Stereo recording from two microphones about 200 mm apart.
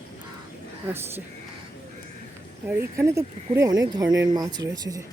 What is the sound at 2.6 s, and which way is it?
Speech, 10° right (ahead or behind).